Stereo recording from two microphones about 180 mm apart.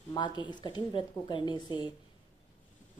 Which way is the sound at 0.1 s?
25° left (ahead or behind).